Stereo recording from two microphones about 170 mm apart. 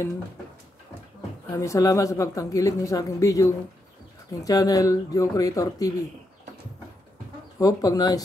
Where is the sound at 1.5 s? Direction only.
20° left (ahead or behind).